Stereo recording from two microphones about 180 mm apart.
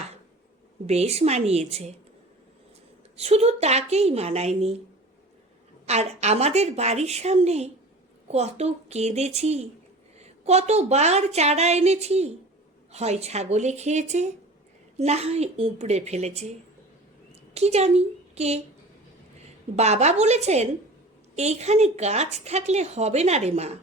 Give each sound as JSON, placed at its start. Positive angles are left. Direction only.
{"t": 0.9, "sound": "speech", "side_deg": -35}
{"t": 3.2, "sound": "speech", "side_deg": -35}
{"t": 5.8, "sound": "speech", "side_deg": -35}
{"t": 17.5, "sound": "a woman's voice", "side_deg": -35}
{"t": 19.7, "sound": "speech", "side_deg": -35}